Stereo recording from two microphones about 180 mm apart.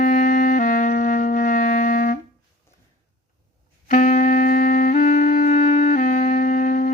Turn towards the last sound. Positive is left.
turn(degrees=50)  # may be behind; listen again after turning